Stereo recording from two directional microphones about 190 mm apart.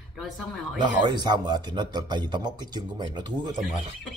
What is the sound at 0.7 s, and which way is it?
Speech, 25° right (ahead or behind).